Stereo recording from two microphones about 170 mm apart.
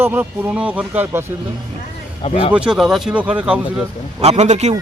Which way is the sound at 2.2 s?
35° left (ahead or behind).